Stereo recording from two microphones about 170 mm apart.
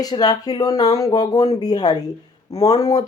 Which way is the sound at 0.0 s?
25° left (ahead or behind).